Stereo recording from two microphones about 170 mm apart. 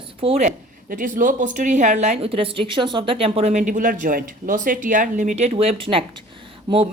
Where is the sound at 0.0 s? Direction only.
35° right (ahead or behind).